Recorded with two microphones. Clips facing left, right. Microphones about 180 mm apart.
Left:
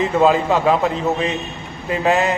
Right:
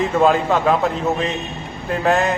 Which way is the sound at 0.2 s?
5° left (ahead or behind).